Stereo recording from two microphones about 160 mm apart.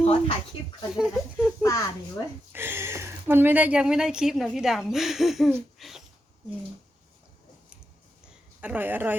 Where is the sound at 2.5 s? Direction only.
15° right (ahead or behind).